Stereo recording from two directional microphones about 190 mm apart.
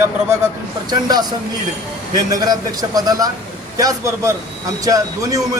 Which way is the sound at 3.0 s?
20° right (ahead or behind).